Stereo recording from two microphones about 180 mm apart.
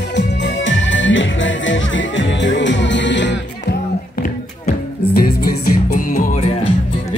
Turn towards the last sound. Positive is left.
turn(degrees=50)  # may be behind; listen again after turning